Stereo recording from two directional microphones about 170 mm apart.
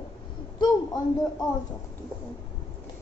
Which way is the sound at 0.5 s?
25° left (ahead or behind).